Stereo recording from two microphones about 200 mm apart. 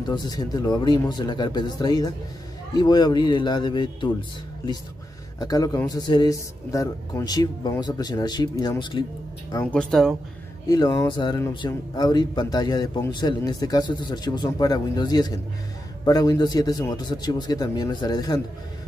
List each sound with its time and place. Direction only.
0.1 s speech: 20° left (ahead or behind)
5.4 s speech: 20° left (ahead or behind)
9.5 s speech: 10° left (ahead or behind)
10.7 s speech: 20° left (ahead or behind)